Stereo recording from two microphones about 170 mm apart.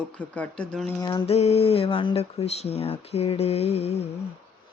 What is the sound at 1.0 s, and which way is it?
Mantra, 25° left (ahead or behind).